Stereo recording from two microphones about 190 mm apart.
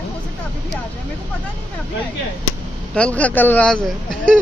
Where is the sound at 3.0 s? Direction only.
5° left (ahead or behind).